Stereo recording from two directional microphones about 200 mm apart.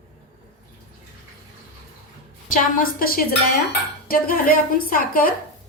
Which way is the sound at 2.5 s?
45° left (ahead or behind).